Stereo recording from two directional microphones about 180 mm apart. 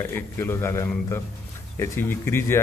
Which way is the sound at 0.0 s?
10° left (ahead or behind).